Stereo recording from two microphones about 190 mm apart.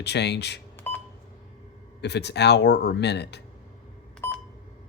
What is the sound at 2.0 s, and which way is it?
Speech, 60° left (ahead or behind).